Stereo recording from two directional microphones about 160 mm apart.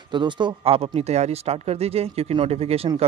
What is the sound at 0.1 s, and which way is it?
A man's voice, 30° right (ahead or behind).